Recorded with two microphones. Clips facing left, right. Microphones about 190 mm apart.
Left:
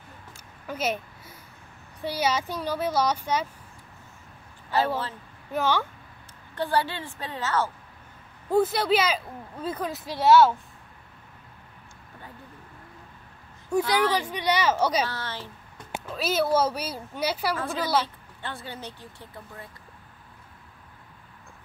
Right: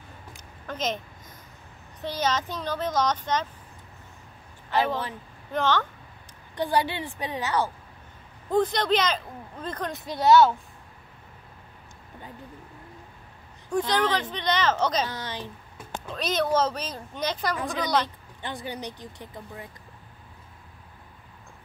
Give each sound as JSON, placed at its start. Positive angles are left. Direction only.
{"t": 0.7, "sound": "speech", "side_deg": 10}
{"t": 5.5, "sound": "speech", "side_deg": 10}
{"t": 6.5, "sound": "speech", "side_deg": -15}
{"t": 8.5, "sound": "speech", "side_deg": 5}
{"t": 13.7, "sound": "speech", "side_deg": 10}
{"t": 15.0, "sound": "speech", "side_deg": -15}
{"t": 15.9, "sound": "speech", "side_deg": 5}
{"t": 17.6, "sound": "speech", "side_deg": -15}